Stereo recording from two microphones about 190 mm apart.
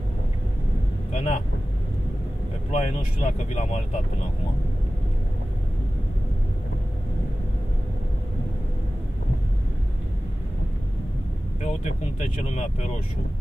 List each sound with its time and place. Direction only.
1.1 s speech: 35° left (ahead or behind)
2.7 s speech: 40° left (ahead or behind)
11.6 s speech: 35° left (ahead or behind)